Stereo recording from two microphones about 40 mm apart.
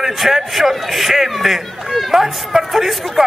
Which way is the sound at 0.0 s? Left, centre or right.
Centre.